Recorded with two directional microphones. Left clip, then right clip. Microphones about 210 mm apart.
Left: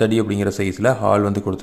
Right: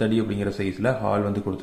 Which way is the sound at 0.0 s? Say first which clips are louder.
Left 6 dB; 35° left (ahead or behind).